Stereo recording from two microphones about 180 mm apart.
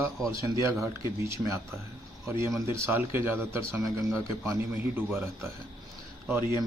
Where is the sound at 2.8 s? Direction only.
15° right (ahead or behind).